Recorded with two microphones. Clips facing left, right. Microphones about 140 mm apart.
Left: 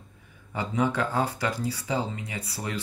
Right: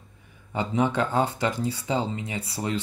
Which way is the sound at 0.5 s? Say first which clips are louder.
Right 2 dB; 25° right (ahead or behind).